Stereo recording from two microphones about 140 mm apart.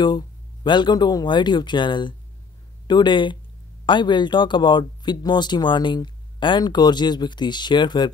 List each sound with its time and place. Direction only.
0.0 s speech: 30° left (ahead or behind)